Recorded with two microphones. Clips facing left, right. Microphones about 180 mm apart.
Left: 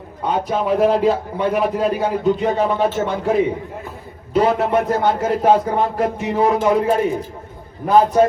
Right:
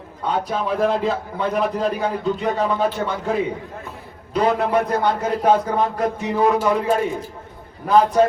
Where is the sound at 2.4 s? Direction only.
20° left (ahead or behind).